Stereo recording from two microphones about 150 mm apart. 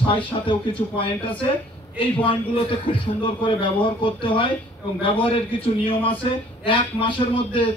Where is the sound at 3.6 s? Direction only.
35° left (ahead or behind).